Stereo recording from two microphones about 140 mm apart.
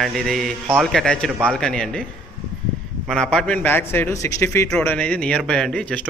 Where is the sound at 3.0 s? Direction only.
5° left (ahead or behind).